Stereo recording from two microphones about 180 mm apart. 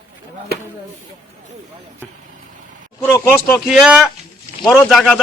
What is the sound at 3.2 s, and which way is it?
A man's voice, 5° left (ahead or behind).